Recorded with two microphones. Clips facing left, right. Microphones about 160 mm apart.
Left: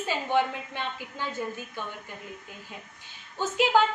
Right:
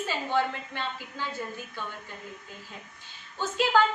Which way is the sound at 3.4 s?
15° left (ahead or behind).